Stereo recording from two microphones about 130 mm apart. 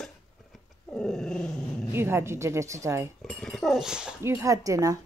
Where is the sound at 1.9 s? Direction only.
20° right (ahead or behind).